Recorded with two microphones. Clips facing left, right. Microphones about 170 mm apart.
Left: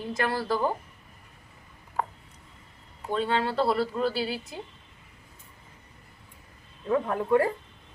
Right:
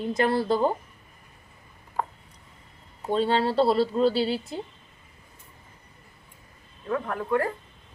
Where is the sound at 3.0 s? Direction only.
30° right (ahead or behind).